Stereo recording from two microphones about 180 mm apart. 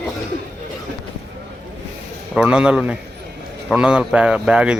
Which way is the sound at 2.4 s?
5° right (ahead or behind).